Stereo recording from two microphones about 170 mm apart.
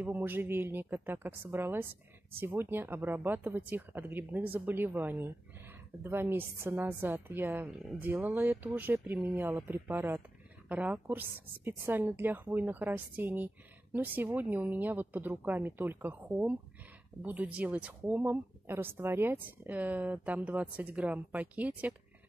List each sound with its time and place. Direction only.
0.0 s speech: 10° right (ahead or behind)